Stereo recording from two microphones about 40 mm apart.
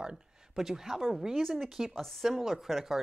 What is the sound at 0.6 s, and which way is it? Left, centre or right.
Speech, centre.